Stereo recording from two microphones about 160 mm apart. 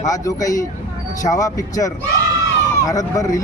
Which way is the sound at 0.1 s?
20° left (ahead or behind).